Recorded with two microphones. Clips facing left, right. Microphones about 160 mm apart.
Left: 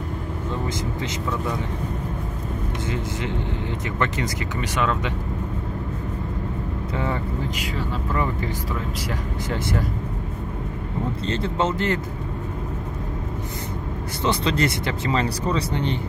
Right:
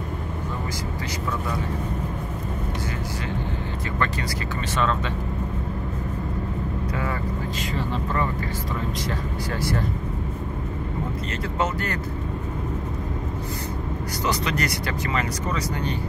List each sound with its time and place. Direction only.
7.7 s speech: 10° left (ahead or behind)
9.5 s speech: 20° left (ahead or behind)
11.4 s speech: 25° left (ahead or behind)
14.2 s speech: 25° left (ahead or behind)